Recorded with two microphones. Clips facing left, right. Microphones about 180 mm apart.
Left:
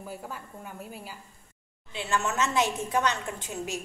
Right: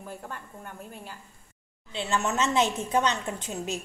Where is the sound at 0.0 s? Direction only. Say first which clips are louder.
Left 1 dB; 5° left (ahead or behind).